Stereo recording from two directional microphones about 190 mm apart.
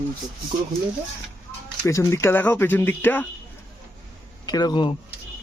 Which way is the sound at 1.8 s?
15° left (ahead or behind).